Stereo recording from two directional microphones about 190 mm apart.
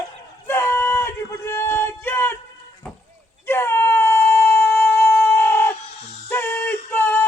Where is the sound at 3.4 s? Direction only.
10° left (ahead or behind).